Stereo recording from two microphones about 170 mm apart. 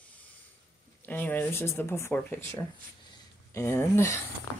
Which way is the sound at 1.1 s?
10° left (ahead or behind).